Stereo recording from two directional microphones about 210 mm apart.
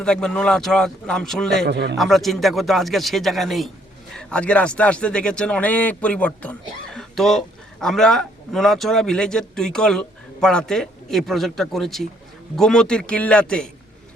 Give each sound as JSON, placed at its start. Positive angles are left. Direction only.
{"t": 0.0, "sound": "speech", "side_deg": 5}
{"t": 1.6, "sound": "a man's voice", "side_deg": -55}
{"t": 2.0, "sound": "speech", "side_deg": 0}